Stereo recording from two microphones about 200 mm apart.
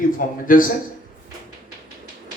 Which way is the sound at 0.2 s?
45° left (ahead or behind).